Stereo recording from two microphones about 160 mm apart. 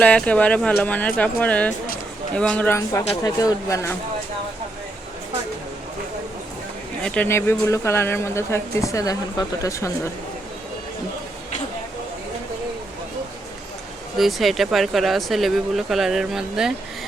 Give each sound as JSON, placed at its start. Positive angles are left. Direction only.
{"t": 0.0, "sound": "speech", "side_deg": 10}
{"t": 7.0, "sound": "speech", "side_deg": 10}
{"t": 14.2, "sound": "speech", "side_deg": 0}